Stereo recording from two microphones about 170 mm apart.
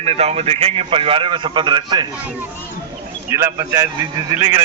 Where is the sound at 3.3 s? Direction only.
20° right (ahead or behind).